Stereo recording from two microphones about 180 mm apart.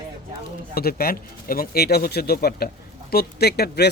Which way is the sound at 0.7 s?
60° left (ahead or behind).